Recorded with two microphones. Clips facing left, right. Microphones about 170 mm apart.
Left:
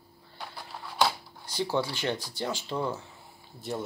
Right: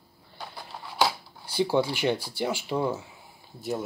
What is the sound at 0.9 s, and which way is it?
Speech, 10° right (ahead or behind).